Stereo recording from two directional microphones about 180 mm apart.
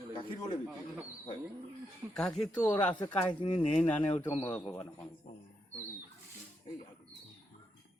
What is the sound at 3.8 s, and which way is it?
A man's voice, 5° left (ahead or behind).